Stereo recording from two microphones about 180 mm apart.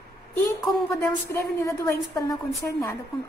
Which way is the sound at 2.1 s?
15° left (ahead or behind).